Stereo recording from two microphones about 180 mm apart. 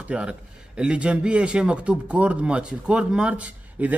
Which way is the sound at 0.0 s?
5° right (ahead or behind).